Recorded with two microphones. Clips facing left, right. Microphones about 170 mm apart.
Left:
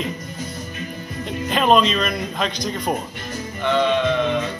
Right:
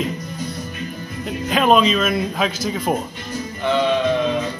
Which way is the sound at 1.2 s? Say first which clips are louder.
Right 2 dB; 5° right (ahead or behind).